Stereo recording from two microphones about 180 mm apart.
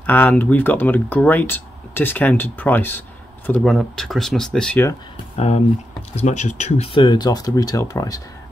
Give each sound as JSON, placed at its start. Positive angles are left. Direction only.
{"t": 0.0, "sound": "speech", "side_deg": 10}
{"t": 6.1, "sound": "speech", "side_deg": 40}